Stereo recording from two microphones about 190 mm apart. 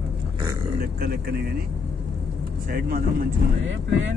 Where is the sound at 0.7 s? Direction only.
50° right (ahead or behind).